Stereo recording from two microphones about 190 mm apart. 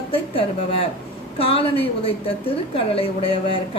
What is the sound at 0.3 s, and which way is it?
A woman's voice, 30° left (ahead or behind).